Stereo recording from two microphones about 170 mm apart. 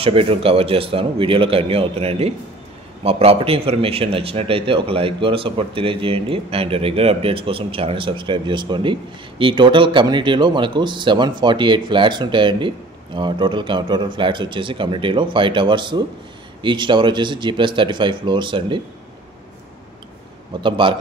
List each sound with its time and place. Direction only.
0.0 s a man's voice: 35° right (ahead or behind)
20.6 s speech: 30° right (ahead or behind)